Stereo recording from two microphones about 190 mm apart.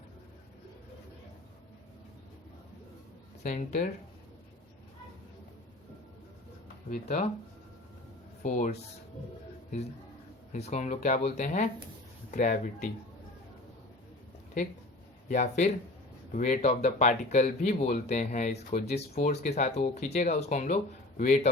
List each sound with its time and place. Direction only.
3.4 s speech: 40° left (ahead or behind)
6.9 s speech: 40° left (ahead or behind)
8.4 s speech: 45° left (ahead or behind)
10.5 s speech: 35° left (ahead or behind)
15.3 s a man's voice: 40° left (ahead or behind)